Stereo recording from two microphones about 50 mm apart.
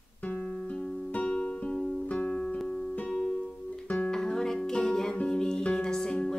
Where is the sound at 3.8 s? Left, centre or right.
Left.